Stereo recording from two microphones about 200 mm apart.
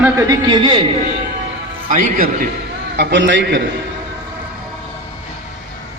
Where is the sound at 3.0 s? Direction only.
65° right (ahead or behind).